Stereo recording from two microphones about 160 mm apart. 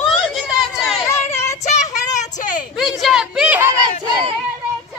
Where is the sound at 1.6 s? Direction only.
50° left (ahead or behind).